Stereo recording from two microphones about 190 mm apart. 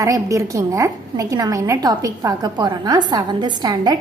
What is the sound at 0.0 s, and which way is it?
A woman's voice, 15° right (ahead or behind).